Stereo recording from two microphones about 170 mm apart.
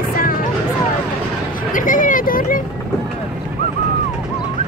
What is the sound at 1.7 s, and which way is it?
Vehicle, 50° left (ahead or behind).